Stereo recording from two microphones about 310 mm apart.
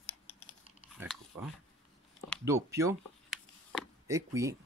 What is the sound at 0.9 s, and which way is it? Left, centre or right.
Biting, centre.